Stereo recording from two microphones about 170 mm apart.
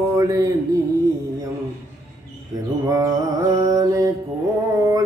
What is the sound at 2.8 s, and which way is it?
Music, 20° right (ahead or behind).